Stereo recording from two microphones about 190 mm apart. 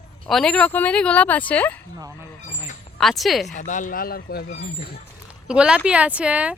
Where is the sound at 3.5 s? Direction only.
40° left (ahead or behind); by 4.9 s 60° left (ahead or behind).